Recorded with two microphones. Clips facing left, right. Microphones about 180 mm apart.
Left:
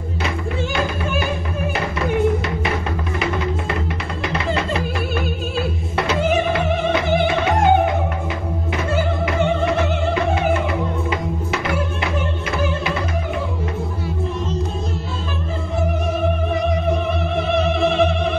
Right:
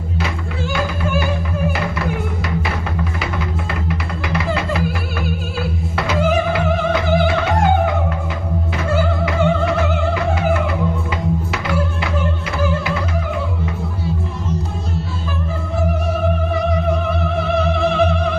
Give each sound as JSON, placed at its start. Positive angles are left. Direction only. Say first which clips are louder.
{"t": 4.3, "sound": "music", "louder": "right 1 dB", "side_deg": 25}
{"t": 8.9, "sound": "music", "louder": "right 2 dB", "side_deg": 20}
{"t": 16.9, "sound": "music", "louder": "right 1 dB", "side_deg": 20}